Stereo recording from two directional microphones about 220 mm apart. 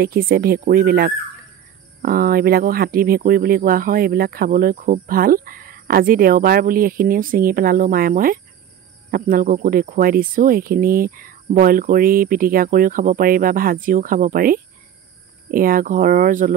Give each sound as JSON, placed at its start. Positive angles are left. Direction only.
{"t": 0.0, "sound": "speech", "side_deg": -45}